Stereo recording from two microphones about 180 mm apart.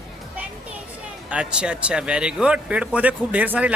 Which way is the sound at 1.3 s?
5° right (ahead or behind).